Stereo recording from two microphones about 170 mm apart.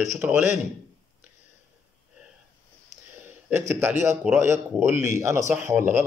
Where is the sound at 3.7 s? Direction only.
15° right (ahead or behind).